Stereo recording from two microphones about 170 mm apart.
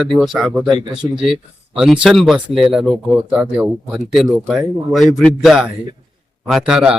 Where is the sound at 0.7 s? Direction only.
30° right (ahead or behind).